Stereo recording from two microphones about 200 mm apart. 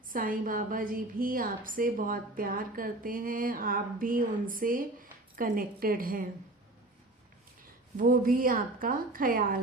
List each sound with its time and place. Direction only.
0.1 s a woman's voice: 45° right (ahead or behind)
7.9 s a woman's voice: 45° right (ahead or behind)